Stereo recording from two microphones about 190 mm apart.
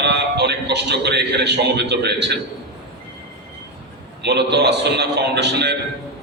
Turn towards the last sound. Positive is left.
turn(degrees=-60)  # may be behind; listen again after turning